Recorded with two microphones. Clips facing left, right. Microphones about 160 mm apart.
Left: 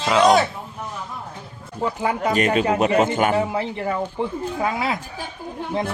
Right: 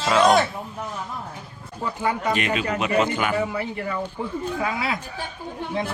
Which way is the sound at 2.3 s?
40° left (ahead or behind).